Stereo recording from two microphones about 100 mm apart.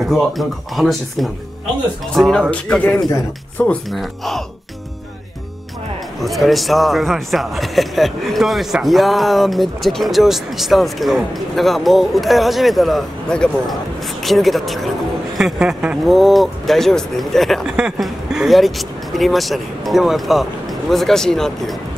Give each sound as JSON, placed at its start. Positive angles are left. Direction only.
{"t": 0.0, "sound": "a man's voice", "side_deg": 0}
{"t": 3.9, "sound": "a man's voice", "side_deg": 0}
{"t": 6.2, "sound": "a man's voice", "side_deg": 0}